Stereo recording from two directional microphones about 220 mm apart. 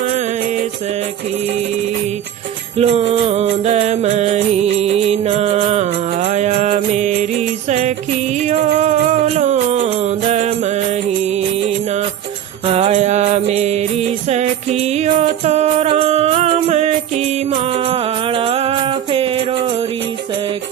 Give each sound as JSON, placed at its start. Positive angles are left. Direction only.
{"t": 2.7, "sound": "music", "side_deg": -25}
{"t": 12.6, "sound": "music", "side_deg": -25}